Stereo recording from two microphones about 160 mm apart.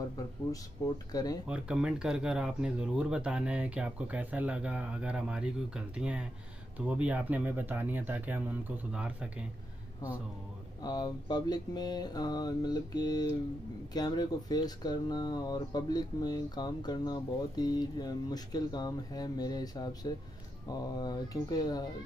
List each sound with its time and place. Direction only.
0.8 s speech: 20° left (ahead or behind)
1.5 s speech: 5° right (ahead or behind)
10.8 s speech: 25° left (ahead or behind)